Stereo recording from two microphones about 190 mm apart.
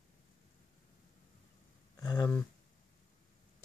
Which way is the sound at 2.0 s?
20° left (ahead or behind).